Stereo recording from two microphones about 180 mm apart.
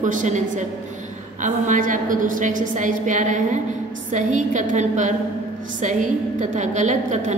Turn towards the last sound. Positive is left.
turn(degrees=-40)  # may be behind; listen again after turning